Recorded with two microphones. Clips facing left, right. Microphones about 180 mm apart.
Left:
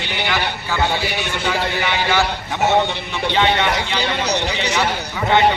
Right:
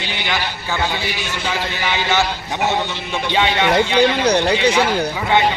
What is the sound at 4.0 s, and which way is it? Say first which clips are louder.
Speech: right 6 dB; 55° right (ahead or behind).